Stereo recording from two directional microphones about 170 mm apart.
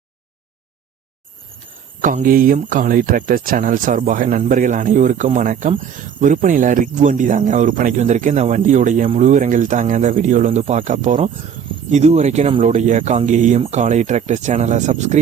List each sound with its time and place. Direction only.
2.0 s speech: 50° right (ahead or behind)